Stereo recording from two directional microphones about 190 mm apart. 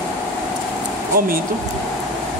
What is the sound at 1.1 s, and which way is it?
Speech, 50° right (ahead or behind).